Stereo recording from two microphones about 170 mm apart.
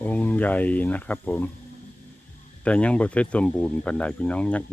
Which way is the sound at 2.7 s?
5° left (ahead or behind).